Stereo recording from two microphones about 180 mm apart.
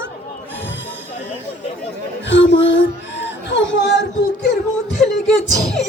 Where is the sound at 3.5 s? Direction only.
90° left.